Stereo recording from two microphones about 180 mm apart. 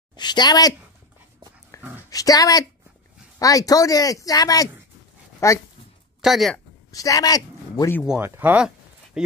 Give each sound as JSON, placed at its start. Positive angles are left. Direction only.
{"t": 0.1, "sound": "a woman's voice", "side_deg": 25}
{"t": 1.7, "sound": "dog", "side_deg": 15}
{"t": 2.0, "sound": "speech", "side_deg": 20}
{"t": 6.2, "sound": "speech", "side_deg": 0}
{"t": 6.9, "sound": "speech", "side_deg": 20}
{"t": 8.0, "sound": "speech", "side_deg": -5}